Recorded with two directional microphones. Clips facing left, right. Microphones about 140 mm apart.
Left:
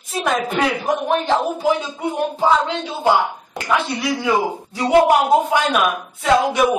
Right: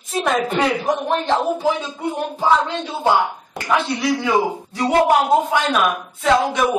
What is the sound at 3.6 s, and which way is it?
Speech, centre (ahead or behind).